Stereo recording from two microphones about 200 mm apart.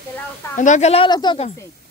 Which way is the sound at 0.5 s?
35° left (ahead or behind).